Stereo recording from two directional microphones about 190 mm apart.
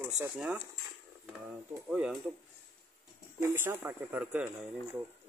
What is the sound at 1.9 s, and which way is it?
Speech, 5° right (ahead or behind).